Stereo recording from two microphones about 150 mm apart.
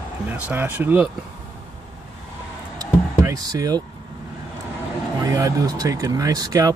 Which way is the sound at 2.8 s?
25° right (ahead or behind).